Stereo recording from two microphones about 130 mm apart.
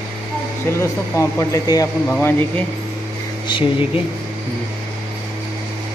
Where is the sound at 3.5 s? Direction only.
40° left (ahead or behind).